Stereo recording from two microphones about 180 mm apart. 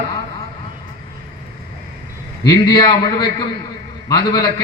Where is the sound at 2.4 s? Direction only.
25° left (ahead or behind).